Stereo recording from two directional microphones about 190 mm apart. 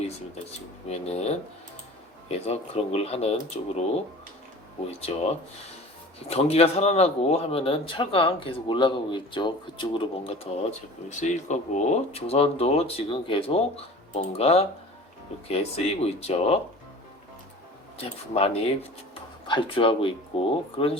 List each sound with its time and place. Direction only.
0.9 s speech: 35° left (ahead or behind)
4.9 s speech: 30° left (ahead or behind)
17.9 s speech: 30° left (ahead or behind)